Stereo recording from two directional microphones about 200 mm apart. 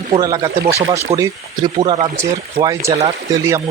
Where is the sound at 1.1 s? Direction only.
30° right (ahead or behind).